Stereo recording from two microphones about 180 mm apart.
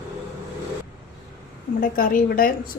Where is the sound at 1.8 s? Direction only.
50° left (ahead or behind).